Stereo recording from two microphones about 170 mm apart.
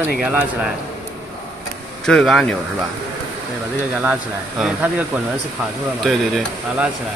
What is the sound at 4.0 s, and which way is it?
Speech, 10° right (ahead or behind).